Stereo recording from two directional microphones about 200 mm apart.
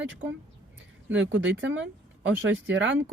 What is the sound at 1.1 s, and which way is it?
Speech, 70° right (ahead or behind).